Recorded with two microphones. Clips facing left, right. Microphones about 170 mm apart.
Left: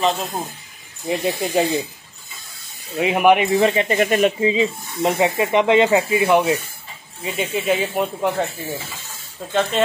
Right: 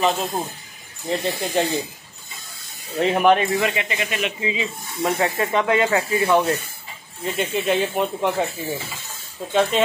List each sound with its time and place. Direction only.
0.0 s speech: centre (ahead or behind)
3.0 s speech: 10° left (ahead or behind)
3.5 s speech: 30° left (ahead or behind)
3.9 s speech: 45° left (ahead or behind)
5.1 s speech: 15° left (ahead or behind)
7.2 s speech: 5° left (ahead or behind)
9.5 s speech: centre (ahead or behind)